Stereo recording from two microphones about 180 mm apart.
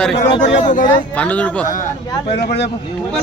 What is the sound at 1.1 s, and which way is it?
Speech, 10° left (ahead or behind).